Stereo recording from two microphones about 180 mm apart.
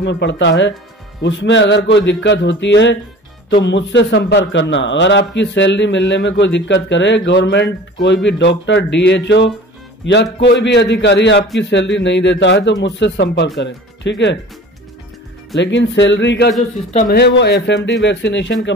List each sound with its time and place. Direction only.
0.0 s a man's voice: 75° left (ahead or behind)
15.6 s a man's voice: 90° left